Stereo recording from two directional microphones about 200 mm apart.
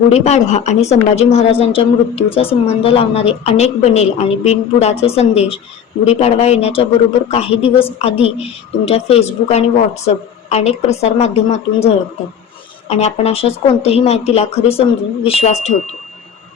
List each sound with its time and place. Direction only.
0.1 s a woman's voice: 35° left (ahead or behind)